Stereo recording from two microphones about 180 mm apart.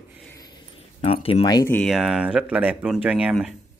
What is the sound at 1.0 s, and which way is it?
Speech, 30° left (ahead or behind).